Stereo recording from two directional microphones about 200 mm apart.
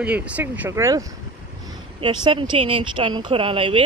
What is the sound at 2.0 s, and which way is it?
Speech, 25° right (ahead or behind).